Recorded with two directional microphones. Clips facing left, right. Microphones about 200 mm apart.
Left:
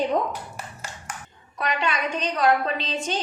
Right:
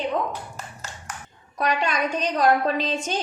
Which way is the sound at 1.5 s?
40° right (ahead or behind).